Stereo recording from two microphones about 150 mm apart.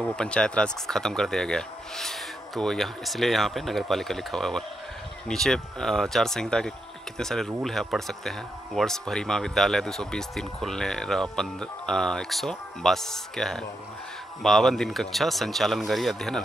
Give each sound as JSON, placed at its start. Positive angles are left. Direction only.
{"t": 0.0, "sound": "speech", "side_deg": 5}